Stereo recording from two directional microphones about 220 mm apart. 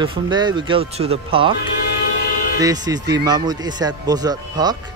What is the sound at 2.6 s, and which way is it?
Speech, 15° right (ahead or behind).